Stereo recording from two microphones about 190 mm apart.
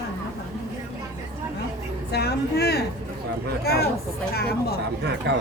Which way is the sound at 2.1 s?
60° left (ahead or behind).